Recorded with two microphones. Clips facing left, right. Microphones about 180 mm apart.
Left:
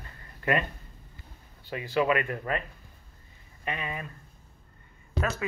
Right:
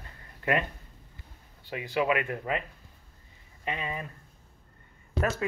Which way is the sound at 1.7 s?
15° right (ahead or behind).